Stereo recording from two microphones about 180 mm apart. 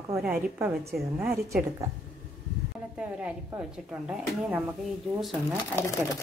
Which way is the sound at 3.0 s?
10° right (ahead or behind).